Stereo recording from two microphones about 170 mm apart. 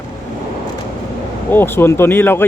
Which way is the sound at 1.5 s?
10° left (ahead or behind).